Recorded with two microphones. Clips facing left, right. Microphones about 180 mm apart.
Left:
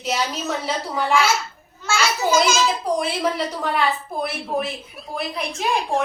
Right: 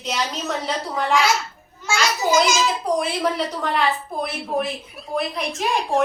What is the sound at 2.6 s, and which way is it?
A woman's voice, centre (ahead or behind).